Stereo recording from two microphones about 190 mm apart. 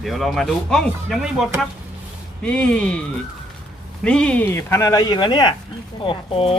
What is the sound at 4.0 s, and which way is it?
Speech, 5° left (ahead or behind).